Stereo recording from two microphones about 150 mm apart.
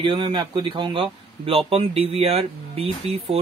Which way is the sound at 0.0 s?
35° right (ahead or behind).